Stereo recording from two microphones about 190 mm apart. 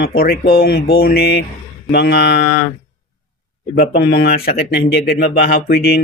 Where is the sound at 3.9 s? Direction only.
50° left (ahead or behind).